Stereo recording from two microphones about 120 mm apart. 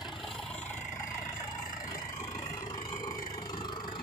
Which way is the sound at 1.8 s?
30° left (ahead or behind).